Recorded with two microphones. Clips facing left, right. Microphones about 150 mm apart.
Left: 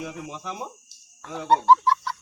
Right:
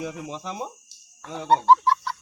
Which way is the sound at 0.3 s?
25° right (ahead or behind).